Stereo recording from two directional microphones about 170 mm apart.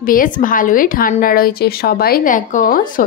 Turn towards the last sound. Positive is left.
turn(degrees=55)  # may be behind; listen again after turning